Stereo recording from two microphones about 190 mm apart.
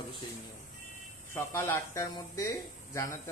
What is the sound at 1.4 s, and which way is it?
Speech, 15° left (ahead or behind).